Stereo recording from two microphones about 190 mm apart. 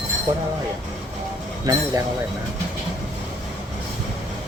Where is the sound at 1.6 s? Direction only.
20° right (ahead or behind).